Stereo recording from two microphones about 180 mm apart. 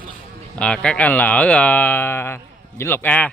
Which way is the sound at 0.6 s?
5° left (ahead or behind).